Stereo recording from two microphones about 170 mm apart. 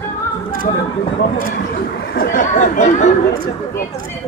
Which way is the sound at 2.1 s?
55° left (ahead or behind).